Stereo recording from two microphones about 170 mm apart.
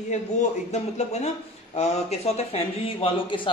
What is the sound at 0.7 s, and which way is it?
Speech, 40° left (ahead or behind).